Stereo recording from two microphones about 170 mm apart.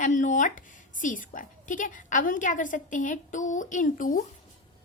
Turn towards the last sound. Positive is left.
turn(degrees=50)  # may be behind; listen again after turning